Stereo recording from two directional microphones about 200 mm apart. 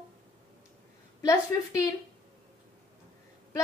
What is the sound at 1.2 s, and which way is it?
Speech, 15° left (ahead or behind).